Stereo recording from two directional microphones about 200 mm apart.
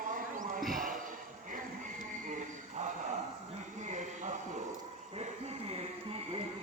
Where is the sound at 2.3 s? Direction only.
35° right (ahead or behind).